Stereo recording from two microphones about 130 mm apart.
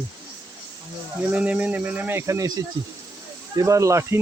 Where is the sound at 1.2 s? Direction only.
10° right (ahead or behind).